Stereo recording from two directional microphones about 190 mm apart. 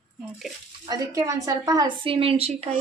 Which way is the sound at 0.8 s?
20° right (ahead or behind).